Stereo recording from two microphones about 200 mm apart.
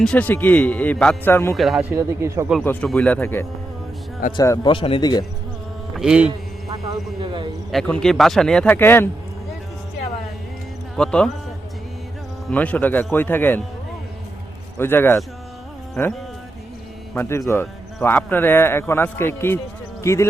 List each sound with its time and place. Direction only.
0.0 s speech: 5° left (ahead or behind)
1.5 s speech: centre (ahead or behind)
1.9 s speech: 15° right (ahead or behind)
2.5 s speech: 5° left (ahead or behind); by 5.2 s 20° left (ahead or behind)
6.0 s speech: 5° right (ahead or behind)
6.7 s speech: 20° right (ahead or behind)
7.7 s speech: 5° left (ahead or behind)
10.9 s speech: 5° left (ahead or behind)
12.5 s speech: 5° left (ahead or behind)
14.8 s speech: 10° left (ahead or behind)
17.2 s speech: 15° left (ahead or behind)